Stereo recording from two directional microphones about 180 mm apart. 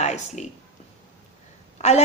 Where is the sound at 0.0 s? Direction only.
40° left (ahead or behind).